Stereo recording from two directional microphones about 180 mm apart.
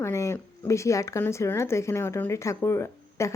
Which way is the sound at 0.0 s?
15° left (ahead or behind).